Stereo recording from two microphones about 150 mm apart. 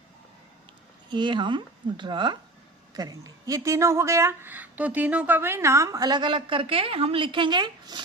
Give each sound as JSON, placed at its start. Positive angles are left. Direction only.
{"t": 1.1, "sound": "speech", "side_deg": -30}